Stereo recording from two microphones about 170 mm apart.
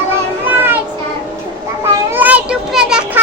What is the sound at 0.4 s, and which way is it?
Children playing, 10° right (ahead or behind).